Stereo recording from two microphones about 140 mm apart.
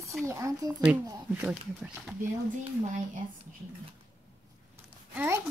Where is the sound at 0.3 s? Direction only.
20° right (ahead or behind); by 2.1 s 5° right (ahead or behind).